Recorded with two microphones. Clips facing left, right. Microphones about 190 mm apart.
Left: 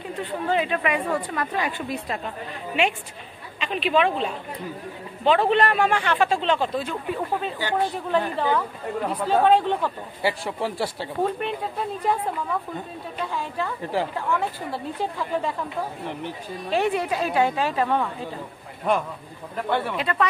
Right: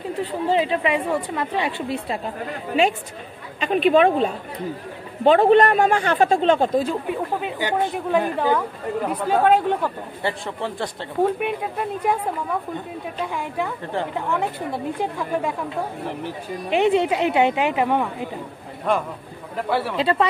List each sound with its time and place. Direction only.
0.2 s a woman's voice: 30° right (ahead or behind)
3.5 s a woman's voice: 45° right (ahead or behind)
7.1 s speech: 15° right (ahead or behind)
10.2 s a man's voice: 5° left (ahead or behind)
11.3 s speech: 10° right (ahead or behind)
13.3 s speech: 15° right (ahead or behind)
16.6 s a woman's voice: 20° right (ahead or behind)
19.7 s speech: 5° right (ahead or behind)
20.0 s a woman's voice: 30° right (ahead or behind)